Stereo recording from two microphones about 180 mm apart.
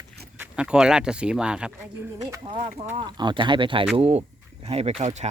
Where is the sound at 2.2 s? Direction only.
25° right (ahead or behind).